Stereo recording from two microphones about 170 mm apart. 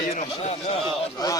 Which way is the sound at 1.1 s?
20° left (ahead or behind).